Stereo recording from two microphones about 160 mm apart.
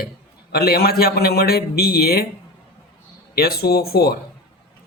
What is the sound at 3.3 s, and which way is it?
Speech, 75° left (ahead or behind).